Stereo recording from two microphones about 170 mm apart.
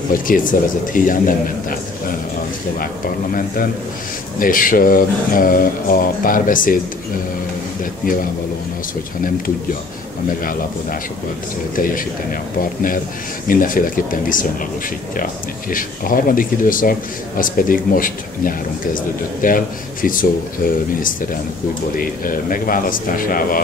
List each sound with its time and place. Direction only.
0.1 s a man's voice: 55° left (ahead or behind)
4.4 s speech: 55° left (ahead or behind)
11.7 s speech: 55° left (ahead or behind)
13.5 s a man's voice: 55° left (ahead or behind)
15.7 s speech: 55° left (ahead or behind)